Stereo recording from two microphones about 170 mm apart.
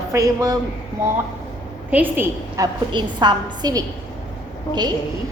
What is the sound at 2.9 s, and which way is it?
Speech, 25° right (ahead or behind).